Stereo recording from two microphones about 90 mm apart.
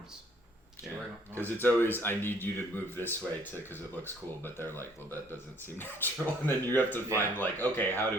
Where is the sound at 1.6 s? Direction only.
25° left (ahead or behind).